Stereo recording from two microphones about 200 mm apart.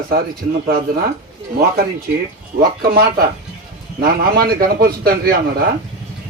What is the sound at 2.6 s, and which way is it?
A man's voice, 50° right (ahead or behind).